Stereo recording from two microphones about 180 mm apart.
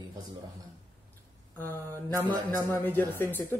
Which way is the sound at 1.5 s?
10° left (ahead or behind).